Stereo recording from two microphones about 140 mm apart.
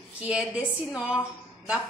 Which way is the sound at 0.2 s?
10° right (ahead or behind).